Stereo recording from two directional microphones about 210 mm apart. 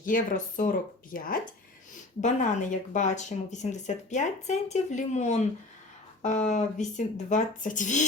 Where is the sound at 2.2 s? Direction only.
35° left (ahead or behind).